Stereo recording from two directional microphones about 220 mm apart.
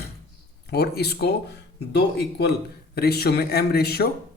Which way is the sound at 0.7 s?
45° left (ahead or behind).